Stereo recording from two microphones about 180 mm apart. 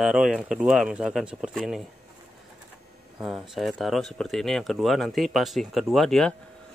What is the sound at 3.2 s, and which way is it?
Speech, 5° right (ahead or behind).